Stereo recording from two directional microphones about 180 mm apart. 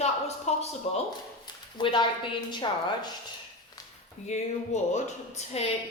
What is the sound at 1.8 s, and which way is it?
A woman's voice, 25° left (ahead or behind).